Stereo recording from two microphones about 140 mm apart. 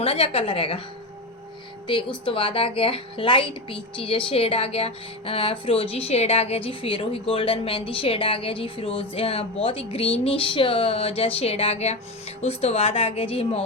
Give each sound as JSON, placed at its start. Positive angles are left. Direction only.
{"t": 0.0, "sound": "speech", "side_deg": 45}
{"t": 1.9, "sound": "speech", "side_deg": 35}